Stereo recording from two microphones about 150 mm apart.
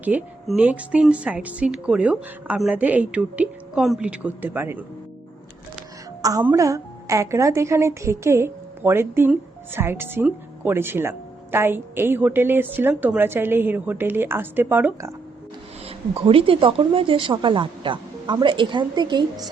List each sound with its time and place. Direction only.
0.0 s speech: 10° right (ahead or behind)
6.4 s speech: 20° right (ahead or behind)
15.9 s speech: 40° right (ahead or behind)